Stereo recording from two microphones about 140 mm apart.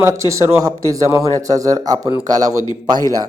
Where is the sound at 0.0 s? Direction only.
20° right (ahead or behind).